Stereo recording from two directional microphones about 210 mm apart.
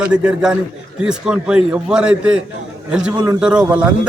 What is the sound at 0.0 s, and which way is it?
A man's voice, 5° right (ahead or behind).